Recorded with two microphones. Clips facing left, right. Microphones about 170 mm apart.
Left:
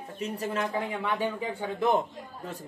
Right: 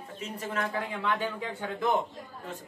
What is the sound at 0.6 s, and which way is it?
Speech, 10° left (ahead or behind).